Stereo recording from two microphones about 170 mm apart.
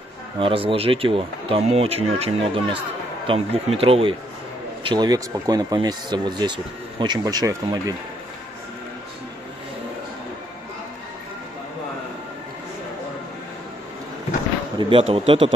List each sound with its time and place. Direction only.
0.4 s speech: 30° right (ahead or behind)
14.8 s speech: 30° right (ahead or behind)